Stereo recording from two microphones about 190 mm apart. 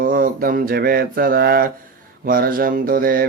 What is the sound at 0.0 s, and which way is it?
Mantra, 45° right (ahead or behind).